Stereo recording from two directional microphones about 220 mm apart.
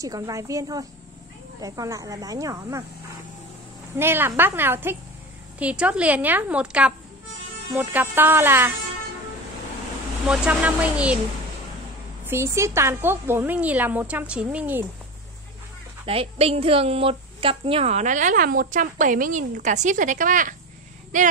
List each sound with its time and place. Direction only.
0.0 s speech: 15° right (ahead or behind)
3.9 s a woman's voice: 10° right (ahead or behind)
10.2 s a woman's voice: 5° right (ahead or behind)
12.3 s speech: 10° right (ahead or behind)
16.1 s a woman's voice: 25° right (ahead or behind)